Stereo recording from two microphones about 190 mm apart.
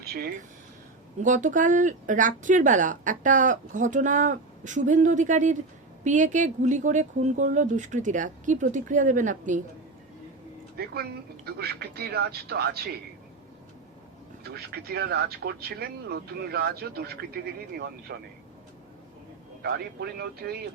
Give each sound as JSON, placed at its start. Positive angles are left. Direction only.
{"t": 0.0, "sound": "speech", "side_deg": -55}
{"t": 10.8, "sound": "speech", "side_deg": -55}
{"t": 14.4, "sound": "speech", "side_deg": -55}
{"t": 19.6, "sound": "speech", "side_deg": -55}